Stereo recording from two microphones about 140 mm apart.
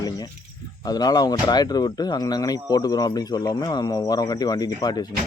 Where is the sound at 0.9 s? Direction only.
30° left (ahead or behind).